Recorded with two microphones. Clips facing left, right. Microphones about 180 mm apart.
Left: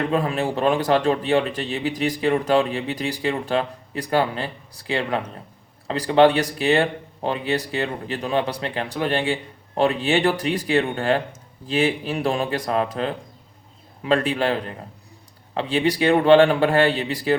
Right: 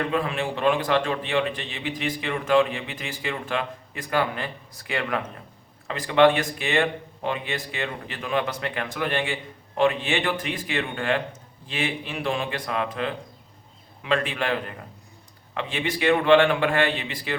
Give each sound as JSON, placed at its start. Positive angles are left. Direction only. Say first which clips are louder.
{"t": 0.1, "sound": "speech", "louder": "left 4 dB", "side_deg": 40}